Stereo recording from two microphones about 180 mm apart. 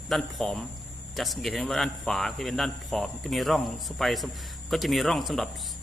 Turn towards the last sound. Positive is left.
turn(degrees=0)  # may be behind; listen again after turning